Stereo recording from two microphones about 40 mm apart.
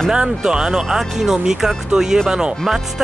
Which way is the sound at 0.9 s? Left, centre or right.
Centre.